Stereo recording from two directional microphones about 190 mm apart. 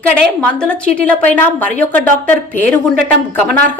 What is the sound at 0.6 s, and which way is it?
Speech, 10° left (ahead or behind).